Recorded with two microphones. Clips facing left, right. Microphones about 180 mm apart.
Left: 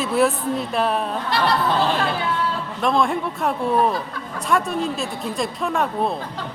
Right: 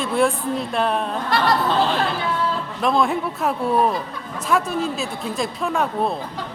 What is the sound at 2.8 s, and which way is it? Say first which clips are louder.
A woman's voice: even; centre (ahead or behind).